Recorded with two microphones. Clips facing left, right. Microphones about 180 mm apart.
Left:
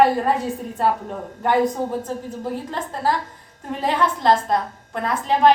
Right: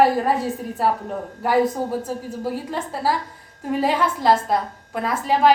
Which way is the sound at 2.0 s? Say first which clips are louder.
Right 1 dB; 10° right (ahead or behind).